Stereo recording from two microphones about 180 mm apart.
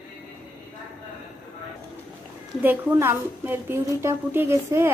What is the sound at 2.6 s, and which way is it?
A woman's voice, 10° right (ahead or behind).